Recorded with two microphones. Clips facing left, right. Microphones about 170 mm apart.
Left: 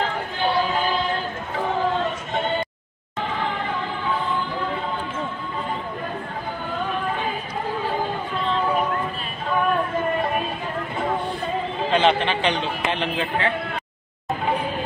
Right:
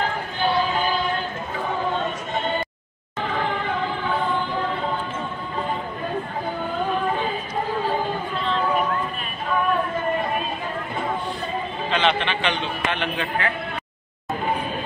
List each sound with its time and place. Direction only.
11.9 s a man's voice: 40° left (ahead or behind)